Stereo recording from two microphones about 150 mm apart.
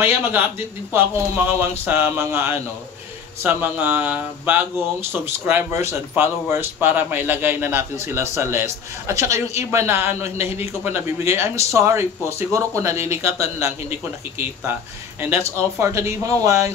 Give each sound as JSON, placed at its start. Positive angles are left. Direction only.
{"t": 0.0, "sound": "speech", "side_deg": -15}